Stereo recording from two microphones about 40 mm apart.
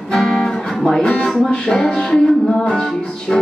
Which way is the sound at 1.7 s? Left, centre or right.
Centre.